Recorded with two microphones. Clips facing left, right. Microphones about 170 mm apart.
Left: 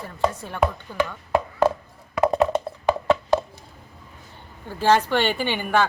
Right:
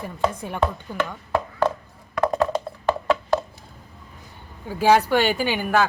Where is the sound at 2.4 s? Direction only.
20° left (ahead or behind).